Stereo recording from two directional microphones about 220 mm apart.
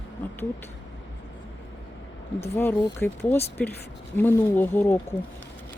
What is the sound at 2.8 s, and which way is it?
Speech, 20° left (ahead or behind).